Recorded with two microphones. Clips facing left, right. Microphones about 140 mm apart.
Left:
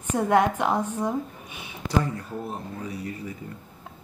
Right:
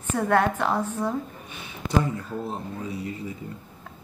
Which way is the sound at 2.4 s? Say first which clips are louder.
Right 2 dB; 25° right (ahead or behind).